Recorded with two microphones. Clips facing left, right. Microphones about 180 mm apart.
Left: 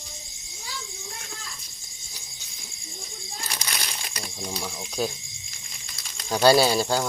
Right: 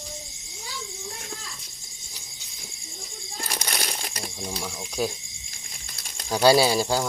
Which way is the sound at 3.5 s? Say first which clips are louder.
Right 4 dB; 40° right (ahead or behind).